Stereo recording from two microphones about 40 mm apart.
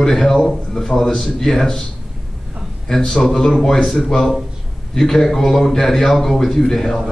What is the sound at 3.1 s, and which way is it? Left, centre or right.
Speech, centre.